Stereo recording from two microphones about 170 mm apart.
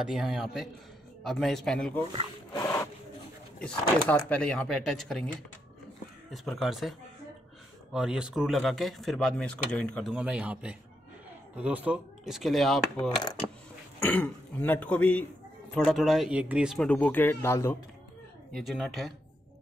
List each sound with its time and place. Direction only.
0.0 s speech: 5° right (ahead or behind)
2.5 s rub: 15° left (ahead or behind)
4.3 s speech: 5° left (ahead or behind)
6.3 s speech: centre (ahead or behind)
10.1 s a man's voice: 5° right (ahead or behind)
13.1 s speech: 25° left (ahead or behind)
13.9 s speech: 10° left (ahead or behind)
18.5 s speech: centre (ahead or behind)